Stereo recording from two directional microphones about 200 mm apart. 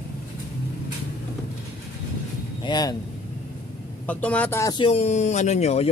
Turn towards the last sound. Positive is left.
turn(degrees=35)  # may be behind; listen again after turning